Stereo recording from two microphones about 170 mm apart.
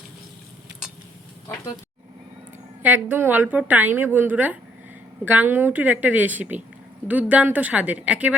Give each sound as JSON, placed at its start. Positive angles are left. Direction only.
{"t": 2.8, "sound": "a woman's voice", "side_deg": -10}